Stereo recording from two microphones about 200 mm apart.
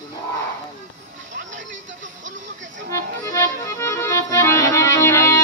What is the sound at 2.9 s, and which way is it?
Accordion, 15° left (ahead or behind).